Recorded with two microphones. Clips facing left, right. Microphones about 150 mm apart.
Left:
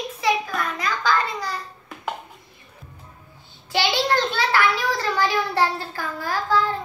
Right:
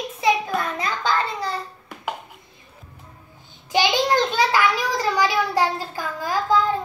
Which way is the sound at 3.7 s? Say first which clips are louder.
Right 2 dB; 15° right (ahead or behind).